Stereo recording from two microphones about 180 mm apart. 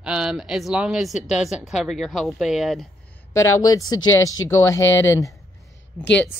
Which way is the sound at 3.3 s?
20° left (ahead or behind).